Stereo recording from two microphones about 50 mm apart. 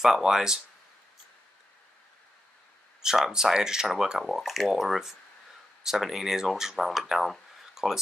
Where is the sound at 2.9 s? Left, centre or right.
Centre.